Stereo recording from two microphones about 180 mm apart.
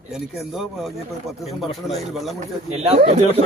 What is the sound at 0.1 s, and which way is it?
Speech, centre (ahead or behind).